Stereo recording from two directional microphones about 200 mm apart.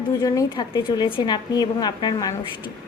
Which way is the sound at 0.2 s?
15° left (ahead or behind).